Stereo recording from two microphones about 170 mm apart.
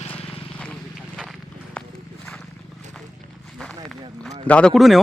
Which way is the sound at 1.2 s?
5° left (ahead or behind).